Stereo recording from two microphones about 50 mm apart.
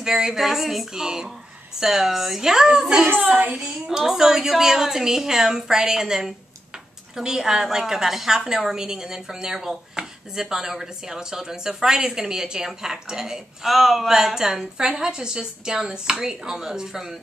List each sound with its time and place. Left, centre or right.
0.0 s a woman's voice: centre
3.2 s a child's voice: right
3.5 s a woman's voice: centre